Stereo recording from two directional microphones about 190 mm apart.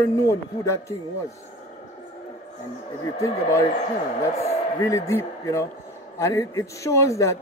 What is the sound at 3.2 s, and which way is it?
Speech, 15° left (ahead or behind).